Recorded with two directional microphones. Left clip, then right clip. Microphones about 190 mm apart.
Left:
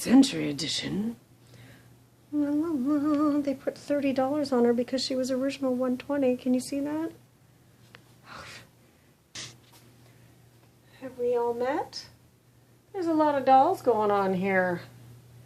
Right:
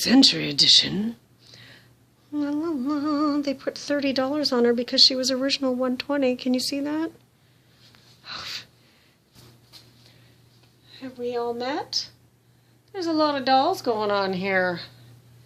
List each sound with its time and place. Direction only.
0.0 s speech: 40° right (ahead or behind)
8.2 s wheeze: 35° right (ahead or behind)
11.0 s speech: 45° right (ahead or behind)
12.9 s speech: 40° right (ahead or behind)